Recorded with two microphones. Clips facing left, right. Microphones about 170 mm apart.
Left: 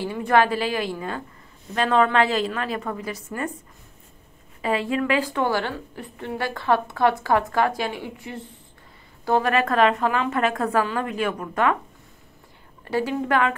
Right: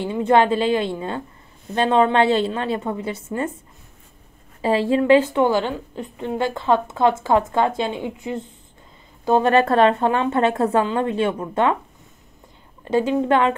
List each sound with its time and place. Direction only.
0.0 s a woman's voice: 20° right (ahead or behind)
4.6 s a woman's voice: 30° right (ahead or behind)
12.8 s a woman's voice: 20° right (ahead or behind)